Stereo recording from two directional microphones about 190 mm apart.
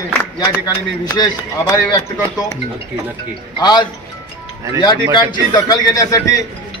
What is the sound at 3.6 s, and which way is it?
A man's voice, 20° left (ahead or behind).